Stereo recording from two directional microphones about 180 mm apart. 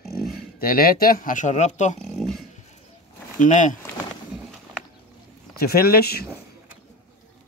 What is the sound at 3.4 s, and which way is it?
Speech, 45° left (ahead or behind).